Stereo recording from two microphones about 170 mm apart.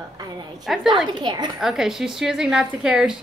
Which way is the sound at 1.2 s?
25° right (ahead or behind).